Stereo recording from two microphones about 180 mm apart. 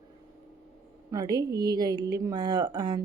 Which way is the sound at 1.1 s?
20° right (ahead or behind).